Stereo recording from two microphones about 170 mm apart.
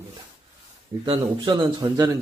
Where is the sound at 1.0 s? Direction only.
25° right (ahead or behind).